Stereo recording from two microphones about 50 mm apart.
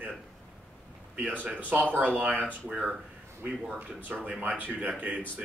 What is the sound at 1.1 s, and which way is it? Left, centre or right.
Speech, right.